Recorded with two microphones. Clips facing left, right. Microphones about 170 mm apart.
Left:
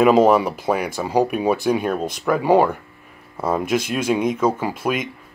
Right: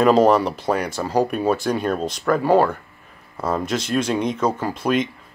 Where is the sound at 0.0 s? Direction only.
5° left (ahead or behind).